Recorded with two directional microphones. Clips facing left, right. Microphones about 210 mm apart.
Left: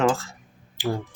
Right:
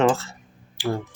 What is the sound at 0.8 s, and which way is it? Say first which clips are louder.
Speech: right 1 dB; 15° left (ahead or behind).